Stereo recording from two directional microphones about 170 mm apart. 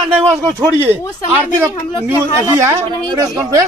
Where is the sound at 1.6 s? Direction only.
15° right (ahead or behind).